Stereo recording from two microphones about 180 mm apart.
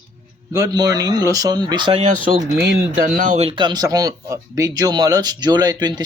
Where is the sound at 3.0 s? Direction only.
50° right (ahead or behind).